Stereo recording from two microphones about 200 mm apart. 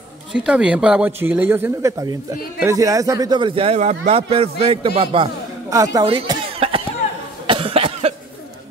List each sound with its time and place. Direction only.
0.3 s speech: 5° right (ahead or behind)
6.0 s cough: 25° right (ahead or behind)